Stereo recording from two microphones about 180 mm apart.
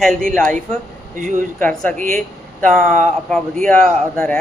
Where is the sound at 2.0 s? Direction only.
45° right (ahead or behind).